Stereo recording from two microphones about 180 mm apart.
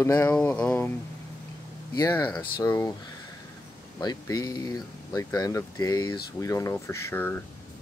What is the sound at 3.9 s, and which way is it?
Speech, 20° left (ahead or behind).